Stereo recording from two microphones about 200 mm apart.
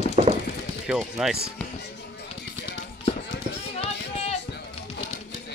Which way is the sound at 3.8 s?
30° left (ahead or behind).